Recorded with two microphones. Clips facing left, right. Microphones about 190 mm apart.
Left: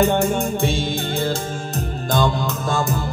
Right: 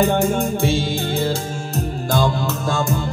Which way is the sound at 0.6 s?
15° left (ahead or behind).